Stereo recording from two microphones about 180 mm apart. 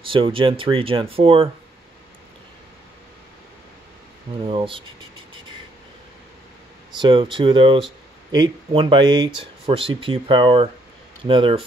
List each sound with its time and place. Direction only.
0.1 s speech: 30° right (ahead or behind)
4.5 s speech: 30° right (ahead or behind)
7.0 s speech: 25° right (ahead or behind)